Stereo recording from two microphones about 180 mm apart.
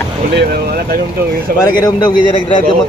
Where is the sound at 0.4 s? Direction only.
55° right (ahead or behind).